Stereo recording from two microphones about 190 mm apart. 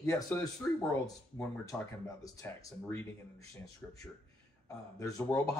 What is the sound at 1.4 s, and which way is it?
Speech, 10° left (ahead or behind).